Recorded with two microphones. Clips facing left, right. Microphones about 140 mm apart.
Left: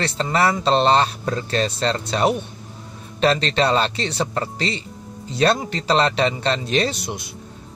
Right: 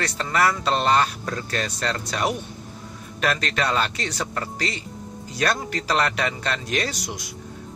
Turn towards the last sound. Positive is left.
turn(degrees=25)  # may be behind; listen again after turning